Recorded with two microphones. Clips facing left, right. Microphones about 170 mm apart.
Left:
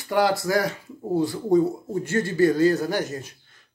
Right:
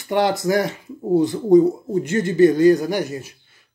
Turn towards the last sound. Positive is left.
turn(degrees=-10)  # may be behind; listen again after turning